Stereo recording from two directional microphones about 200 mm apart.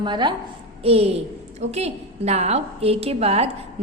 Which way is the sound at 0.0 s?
25° right (ahead or behind).